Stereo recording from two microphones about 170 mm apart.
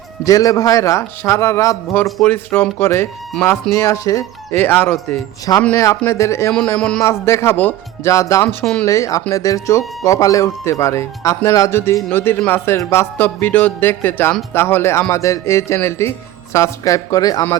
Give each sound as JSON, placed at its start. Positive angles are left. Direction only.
{"t": 0.3, "sound": "speech", "side_deg": 20}
{"t": 2.0, "sound": "a man's voice", "side_deg": 0}
{"t": 2.3, "sound": "speech", "side_deg": 10}
{"t": 6.5, "sound": "a man's voice", "side_deg": 5}
{"t": 7.0, "sound": "a woman's voice", "side_deg": 15}